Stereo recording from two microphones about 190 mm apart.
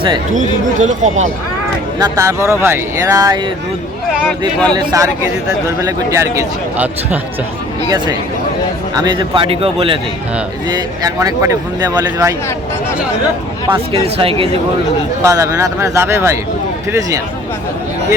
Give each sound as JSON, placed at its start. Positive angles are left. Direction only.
{"t": 0.3, "sound": "speech", "side_deg": -40}
{"t": 2.0, "sound": "a man's voice", "side_deg": -15}
{"t": 4.2, "sound": "speech", "side_deg": 10}
{"t": 4.7, "sound": "a man's voice", "side_deg": -20}
{"t": 7.9, "sound": "speech", "side_deg": -25}
{"t": 13.9, "sound": "speech", "side_deg": -30}
{"t": 15.2, "sound": "a man's voice", "side_deg": -15}